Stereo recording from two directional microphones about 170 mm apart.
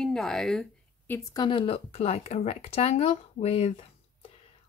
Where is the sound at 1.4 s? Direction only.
30° left (ahead or behind).